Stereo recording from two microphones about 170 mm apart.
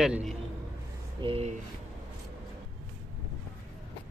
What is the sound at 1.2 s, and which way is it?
Speech, 35° right (ahead or behind).